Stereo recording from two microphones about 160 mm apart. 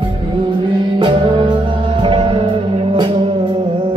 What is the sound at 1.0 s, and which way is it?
Music, 30° right (ahead or behind).